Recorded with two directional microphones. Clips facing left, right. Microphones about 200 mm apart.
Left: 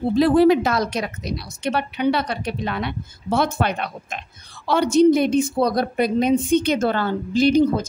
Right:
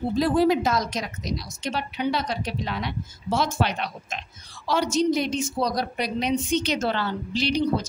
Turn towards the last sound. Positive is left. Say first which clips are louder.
# left 7 dB
turn(degrees=50)  # may be behind; listen again after turning